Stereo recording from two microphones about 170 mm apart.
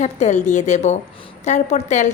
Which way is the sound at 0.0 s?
45° left (ahead or behind).